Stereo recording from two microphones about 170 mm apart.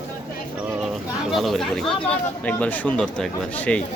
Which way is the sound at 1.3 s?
Centre (ahead or behind).